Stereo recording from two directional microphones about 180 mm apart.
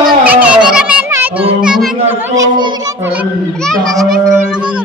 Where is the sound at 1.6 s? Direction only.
5° right (ahead or behind).